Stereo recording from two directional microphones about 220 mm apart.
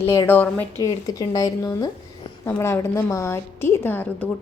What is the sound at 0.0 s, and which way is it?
A woman's voice, 10° left (ahead or behind).